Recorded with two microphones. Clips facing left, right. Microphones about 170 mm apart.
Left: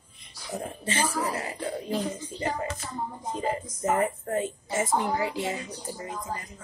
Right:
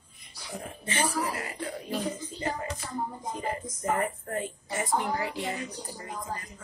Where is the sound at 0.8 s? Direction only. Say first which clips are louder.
Left 1 dB; 25° left (ahead or behind).